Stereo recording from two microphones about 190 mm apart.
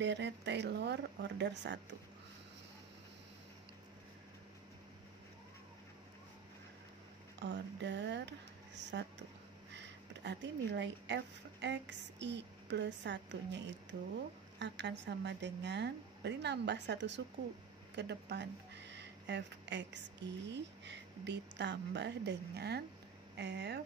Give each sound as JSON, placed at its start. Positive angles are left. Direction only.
{"t": 0.0, "sound": "a woman's voice", "side_deg": -65}
{"t": 7.3, "sound": "speech", "side_deg": -65}
{"t": 9.7, "sound": "a sound", "side_deg": -65}
{"t": 11.6, "sound": "a woman's voice", "side_deg": -65}